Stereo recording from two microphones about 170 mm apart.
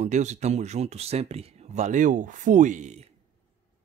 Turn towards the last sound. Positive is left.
turn(degrees=-40)  # may be behind; listen again after turning